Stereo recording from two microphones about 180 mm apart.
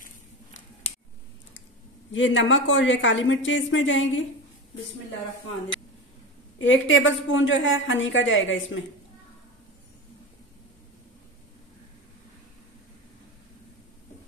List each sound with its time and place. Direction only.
0.0 s a sound: 45° left (ahead or behind)
2.1 s a woman's voice: 90° left
6.6 s a woman's voice: 90° left